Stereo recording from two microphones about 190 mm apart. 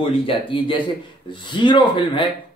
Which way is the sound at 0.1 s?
30° left (ahead or behind).